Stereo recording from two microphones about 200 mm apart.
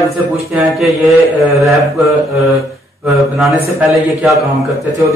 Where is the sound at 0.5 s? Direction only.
5° right (ahead or behind).